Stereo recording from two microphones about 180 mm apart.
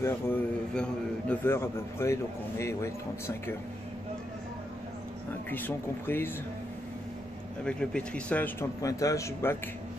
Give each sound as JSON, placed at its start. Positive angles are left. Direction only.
{"t": 0.0, "sound": "a man's voice", "side_deg": 10}
{"t": 5.5, "sound": "a man's voice", "side_deg": 10}
{"t": 7.6, "sound": "a man's voice", "side_deg": 5}